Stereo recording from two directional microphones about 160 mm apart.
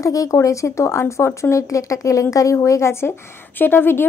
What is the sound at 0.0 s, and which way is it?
Speech, 20° left (ahead or behind).